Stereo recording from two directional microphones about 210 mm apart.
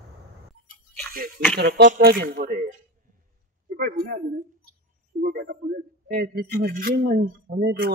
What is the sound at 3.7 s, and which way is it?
Speech, 45° right (ahead or behind).